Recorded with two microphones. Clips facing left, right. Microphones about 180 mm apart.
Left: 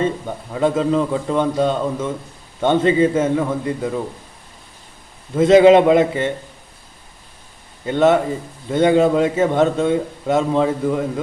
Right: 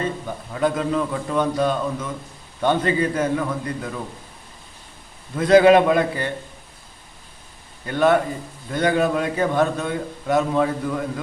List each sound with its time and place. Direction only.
0.0 s a man's voice: 25° left (ahead or behind)
5.4 s a man's voice: 25° left (ahead or behind)
7.9 s a man's voice: 25° left (ahead or behind)